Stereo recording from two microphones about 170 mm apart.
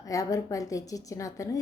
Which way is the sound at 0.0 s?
20° left (ahead or behind).